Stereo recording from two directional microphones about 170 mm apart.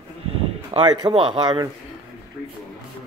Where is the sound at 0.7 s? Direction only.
25° right (ahead or behind).